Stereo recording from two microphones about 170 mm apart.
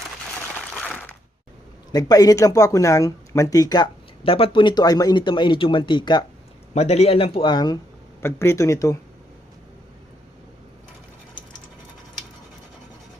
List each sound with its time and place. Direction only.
0.7 s a sound: 5° left (ahead or behind)
1.9 s speech: 25° left (ahead or behind)
6.7 s speech: 40° left (ahead or behind); by 9.0 s 20° left (ahead or behind)